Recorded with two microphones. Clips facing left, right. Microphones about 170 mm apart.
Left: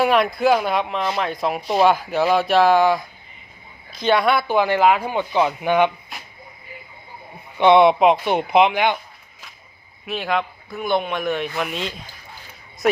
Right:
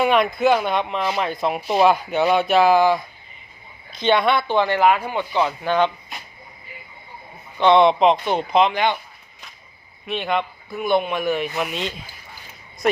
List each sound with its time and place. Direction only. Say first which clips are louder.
0.0 s speech: even; centre (ahead or behind)
6.1 s a sound: right 1 dB; centre (ahead or behind)
7.6 s speech: left 1 dB; 10° left (ahead or behind)
10.1 s speech: even; centre (ahead or behind)